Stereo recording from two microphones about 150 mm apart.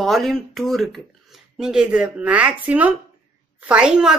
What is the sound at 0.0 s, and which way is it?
A woman's voice, centre (ahead or behind).